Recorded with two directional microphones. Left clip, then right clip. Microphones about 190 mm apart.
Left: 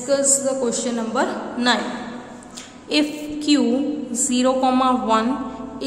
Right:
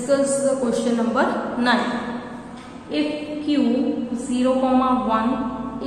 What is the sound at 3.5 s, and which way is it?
A woman's voice, 50° left (ahead or behind).